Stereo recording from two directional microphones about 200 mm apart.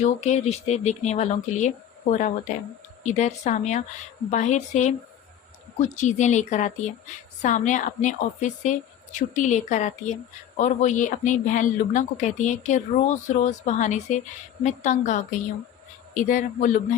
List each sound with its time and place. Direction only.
0.0 s speech: 35° left (ahead or behind)
6.0 s speech: 35° left (ahead or behind)